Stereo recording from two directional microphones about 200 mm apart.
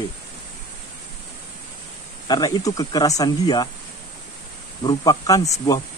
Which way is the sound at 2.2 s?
20° left (ahead or behind).